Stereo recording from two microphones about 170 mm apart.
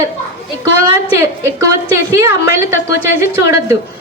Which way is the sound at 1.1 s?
15° right (ahead or behind).